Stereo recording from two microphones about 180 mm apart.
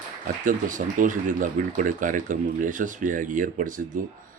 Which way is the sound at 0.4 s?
45° right (ahead or behind).